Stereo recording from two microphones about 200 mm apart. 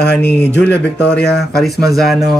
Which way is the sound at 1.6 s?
Centre (ahead or behind).